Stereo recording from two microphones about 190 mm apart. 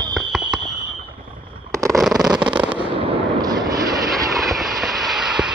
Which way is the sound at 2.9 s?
25° right (ahead or behind).